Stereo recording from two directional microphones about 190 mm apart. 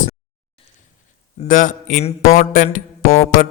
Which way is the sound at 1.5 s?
45° left (ahead or behind).